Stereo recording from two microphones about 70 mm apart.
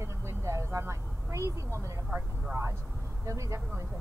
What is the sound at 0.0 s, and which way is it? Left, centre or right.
Vehicle, right.